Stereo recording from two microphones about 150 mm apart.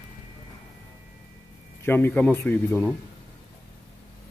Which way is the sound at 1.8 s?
15° left (ahead or behind).